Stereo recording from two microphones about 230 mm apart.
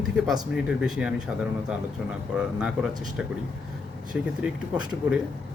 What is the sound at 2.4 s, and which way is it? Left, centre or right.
Speech, centre.